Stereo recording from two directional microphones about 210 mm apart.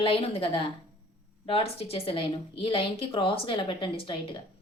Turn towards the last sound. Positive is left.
turn(degrees=25)  # may be behind; listen again after turning